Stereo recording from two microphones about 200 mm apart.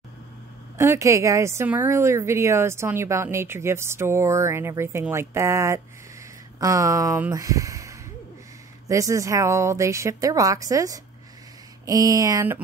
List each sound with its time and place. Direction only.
0.7 s a woman's voice: 15° right (ahead or behind)